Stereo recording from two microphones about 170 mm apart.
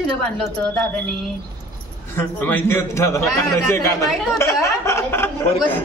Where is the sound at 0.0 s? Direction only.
Centre (ahead or behind).